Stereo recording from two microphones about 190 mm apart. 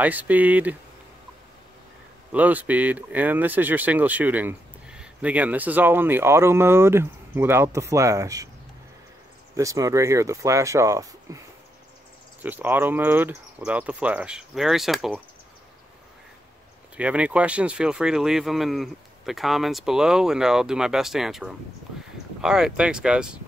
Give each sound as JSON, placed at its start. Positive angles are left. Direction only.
{"t": 0.0, "sound": "speech", "side_deg": -10}
{"t": 2.3, "sound": "speech", "side_deg": -10}
{"t": 9.6, "sound": "speech", "side_deg": -15}
{"t": 12.4, "sound": "speech", "side_deg": -10}
{"t": 16.9, "sound": "speech", "side_deg": -5}